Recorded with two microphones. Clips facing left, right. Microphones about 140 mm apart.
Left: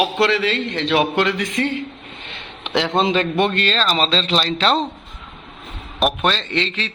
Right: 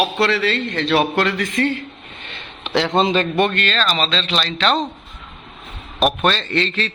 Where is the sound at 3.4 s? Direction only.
25° left (ahead or behind).